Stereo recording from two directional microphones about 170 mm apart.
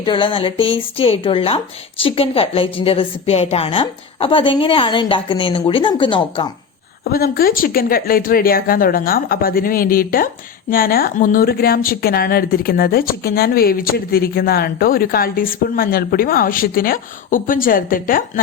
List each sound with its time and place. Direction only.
0.0 s speech: 30° left (ahead or behind)
7.0 s a woman's voice: 60° left (ahead or behind)